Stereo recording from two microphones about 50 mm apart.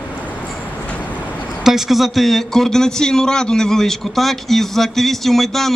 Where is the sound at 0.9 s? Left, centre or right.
Left.